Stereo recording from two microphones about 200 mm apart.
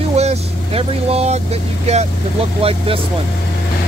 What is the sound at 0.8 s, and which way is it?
Speech, 30° right (ahead or behind).